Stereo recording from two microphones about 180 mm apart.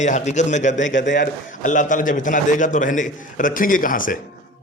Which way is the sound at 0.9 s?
85° left.